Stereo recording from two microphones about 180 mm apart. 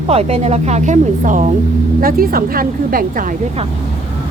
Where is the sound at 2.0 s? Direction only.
55° right (ahead or behind).